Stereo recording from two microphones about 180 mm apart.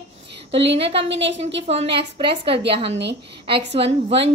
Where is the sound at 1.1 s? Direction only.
80° right.